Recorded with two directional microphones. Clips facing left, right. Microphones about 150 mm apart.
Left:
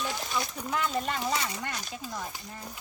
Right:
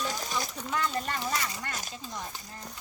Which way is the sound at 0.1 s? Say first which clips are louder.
Left 1 dB; 40° right (ahead or behind).